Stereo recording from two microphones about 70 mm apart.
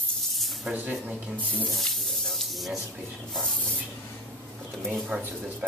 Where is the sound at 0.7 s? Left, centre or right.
Right.